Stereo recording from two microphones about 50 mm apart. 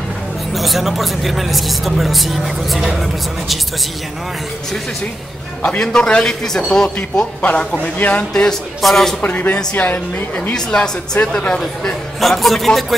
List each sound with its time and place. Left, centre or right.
0.6 s speech: centre
5.6 s a man's voice: centre
7.2 s a man's voice: left
8.8 s speech: centre
9.2 s a woman's voice: left
10.5 s a man's voice: centre
12.2 s speech: centre